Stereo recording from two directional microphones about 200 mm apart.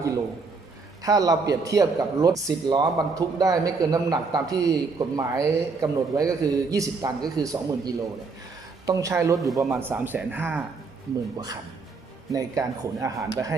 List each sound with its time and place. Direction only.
1.0 s a man's voice: 20° right (ahead or behind)
12.3 s speech: 15° right (ahead or behind)